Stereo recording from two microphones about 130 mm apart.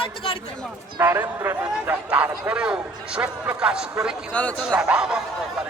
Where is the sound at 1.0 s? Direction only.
20° right (ahead or behind).